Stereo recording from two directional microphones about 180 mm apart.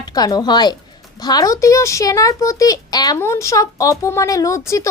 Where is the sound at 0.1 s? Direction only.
20° left (ahead or behind).